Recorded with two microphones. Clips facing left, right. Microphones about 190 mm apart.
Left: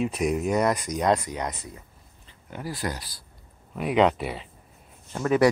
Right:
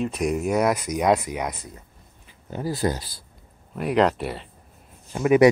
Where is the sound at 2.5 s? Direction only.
25° right (ahead or behind).